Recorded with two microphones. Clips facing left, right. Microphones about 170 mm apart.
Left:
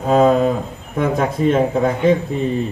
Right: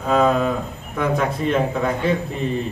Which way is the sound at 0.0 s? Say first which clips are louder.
Left 4 dB; 35° left (ahead or behind).